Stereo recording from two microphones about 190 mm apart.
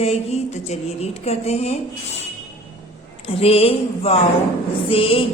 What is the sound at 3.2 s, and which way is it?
A woman's voice, 30° left (ahead or behind).